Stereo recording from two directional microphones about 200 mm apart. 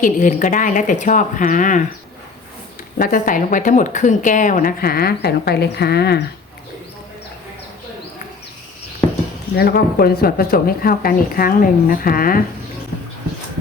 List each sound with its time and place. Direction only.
0.0 s speech: 40° left (ahead or behind)
3.0 s a woman's voice: 45° left (ahead or behind)
9.6 s a woman's voice: 50° left (ahead or behind)